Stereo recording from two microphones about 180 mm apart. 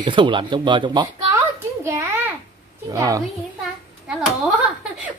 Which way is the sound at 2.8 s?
20° right (ahead or behind).